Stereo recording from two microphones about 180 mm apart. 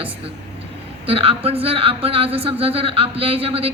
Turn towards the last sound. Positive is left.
turn(degrees=-30)  # may be behind; listen again after turning